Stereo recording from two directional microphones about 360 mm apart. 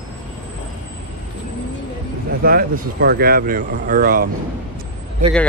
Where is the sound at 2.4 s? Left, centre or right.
Right.